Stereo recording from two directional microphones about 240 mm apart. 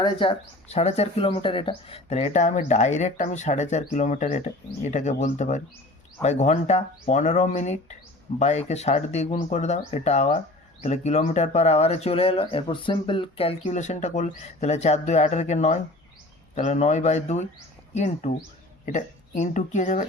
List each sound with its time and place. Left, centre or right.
0.0 s speech: left